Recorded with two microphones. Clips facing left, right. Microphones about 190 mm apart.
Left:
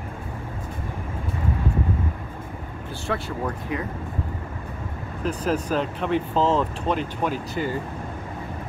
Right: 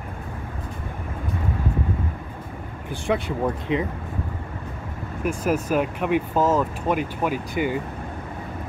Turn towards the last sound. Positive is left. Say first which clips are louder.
# right 2 dB
turn(degrees=-15)  # may be behind; listen again after turning